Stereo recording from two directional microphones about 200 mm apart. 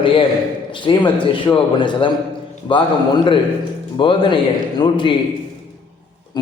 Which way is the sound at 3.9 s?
25° left (ahead or behind).